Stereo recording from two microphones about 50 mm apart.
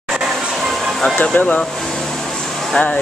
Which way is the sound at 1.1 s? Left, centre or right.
Left.